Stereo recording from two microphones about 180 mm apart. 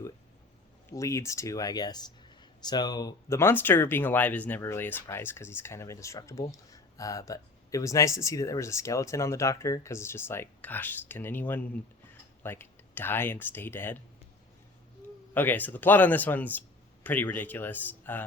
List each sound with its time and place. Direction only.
0.9 s speech: 15° left (ahead or behind)
15.4 s speech: 10° left (ahead or behind)